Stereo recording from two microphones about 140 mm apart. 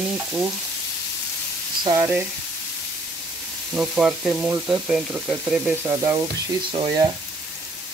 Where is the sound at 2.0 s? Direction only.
15° right (ahead or behind).